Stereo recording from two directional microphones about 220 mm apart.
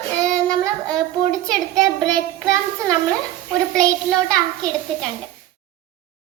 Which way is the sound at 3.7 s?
5° left (ahead or behind).